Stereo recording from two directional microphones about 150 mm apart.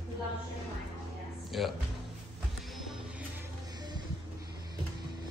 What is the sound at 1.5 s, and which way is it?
Speech, centre (ahead or behind).